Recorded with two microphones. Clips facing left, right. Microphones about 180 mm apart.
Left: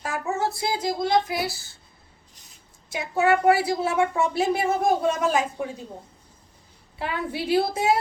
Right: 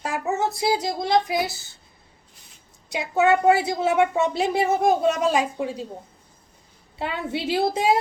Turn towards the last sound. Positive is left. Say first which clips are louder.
# right 1 dB
turn(degrees=-25)  # may be behind; listen again after turning